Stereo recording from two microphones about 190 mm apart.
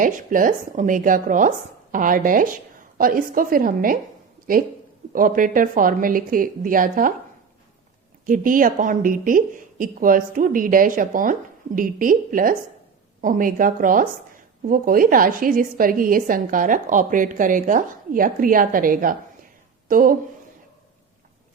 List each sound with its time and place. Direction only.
0.0 s a woman's voice: 45° right (ahead or behind)
8.3 s a woman's voice: 45° right (ahead or behind)